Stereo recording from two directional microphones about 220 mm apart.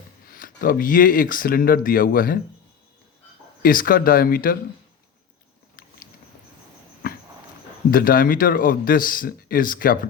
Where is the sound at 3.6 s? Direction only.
40° left (ahead or behind).